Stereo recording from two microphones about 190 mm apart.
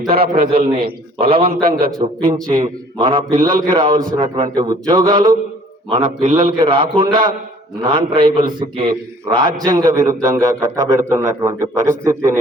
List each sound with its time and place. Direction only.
0.1 s a man's voice: 55° right (ahead or behind)
1.2 s a man's voice: 30° right (ahead or behind)
1.6 s a man's voice: 50° right (ahead or behind)
2.2 s a man's voice: 25° right (ahead or behind)